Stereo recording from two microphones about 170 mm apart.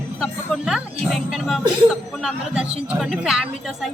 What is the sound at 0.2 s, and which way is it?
A woman's voice, centre (ahead or behind).